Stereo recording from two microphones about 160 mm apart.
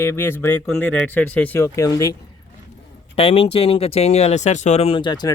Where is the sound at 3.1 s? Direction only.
40° left (ahead or behind).